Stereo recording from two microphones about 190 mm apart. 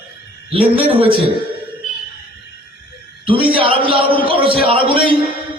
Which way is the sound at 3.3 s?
30° right (ahead or behind).